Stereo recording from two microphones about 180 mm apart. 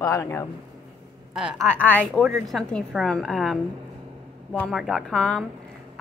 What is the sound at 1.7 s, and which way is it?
A woman's voice, 10° left (ahead or behind).